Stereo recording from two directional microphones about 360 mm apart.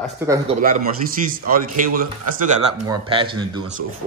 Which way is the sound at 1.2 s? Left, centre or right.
Right.